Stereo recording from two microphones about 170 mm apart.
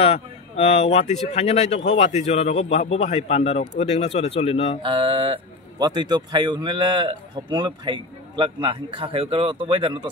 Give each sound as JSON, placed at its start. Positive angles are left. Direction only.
{"t": 0.0, "sound": "a man's voice", "side_deg": 40}
{"t": 4.8, "sound": "speech", "side_deg": -30}